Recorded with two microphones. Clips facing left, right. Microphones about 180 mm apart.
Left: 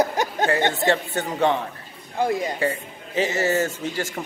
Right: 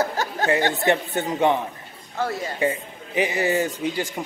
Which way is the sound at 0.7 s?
20° right (ahead or behind).